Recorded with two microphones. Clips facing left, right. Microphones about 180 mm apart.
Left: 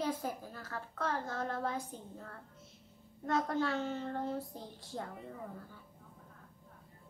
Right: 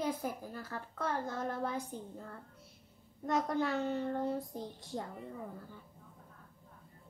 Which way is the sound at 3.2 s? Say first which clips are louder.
Even; 15° right (ahead or behind).